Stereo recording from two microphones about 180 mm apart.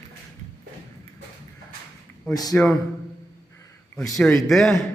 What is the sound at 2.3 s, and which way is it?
Speech, 20° left (ahead or behind).